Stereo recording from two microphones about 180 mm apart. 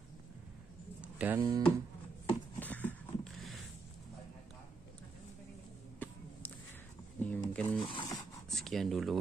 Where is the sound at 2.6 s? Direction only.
10° left (ahead or behind).